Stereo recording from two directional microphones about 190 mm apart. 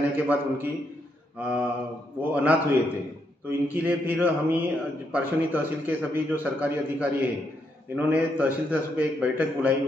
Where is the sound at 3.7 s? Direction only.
10° right (ahead or behind).